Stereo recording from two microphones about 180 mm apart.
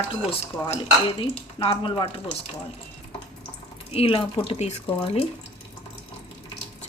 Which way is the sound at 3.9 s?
30° left (ahead or behind).